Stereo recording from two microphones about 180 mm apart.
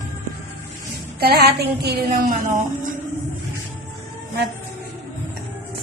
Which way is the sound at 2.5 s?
45° right (ahead or behind).